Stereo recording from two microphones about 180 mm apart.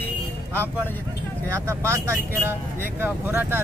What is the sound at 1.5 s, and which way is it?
Speech, 15° right (ahead or behind).